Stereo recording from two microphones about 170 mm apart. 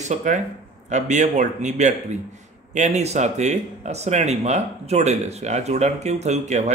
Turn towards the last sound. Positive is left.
turn(degrees=-40)  # may be behind; listen again after turning